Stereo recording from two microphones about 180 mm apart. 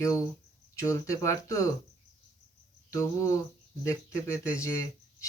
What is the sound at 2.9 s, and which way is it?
Speech, 15° left (ahead or behind).